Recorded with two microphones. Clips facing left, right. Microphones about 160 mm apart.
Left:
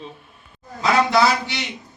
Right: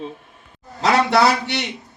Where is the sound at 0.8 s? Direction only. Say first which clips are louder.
Right 1 dB; 70° right (ahead or behind).